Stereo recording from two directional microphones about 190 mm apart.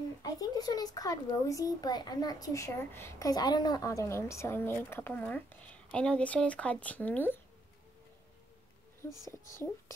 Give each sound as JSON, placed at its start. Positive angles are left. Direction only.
{"t": 0.2, "sound": "a child's voice", "side_deg": 20}
{"t": 9.3, "sound": "a child's voice", "side_deg": 15}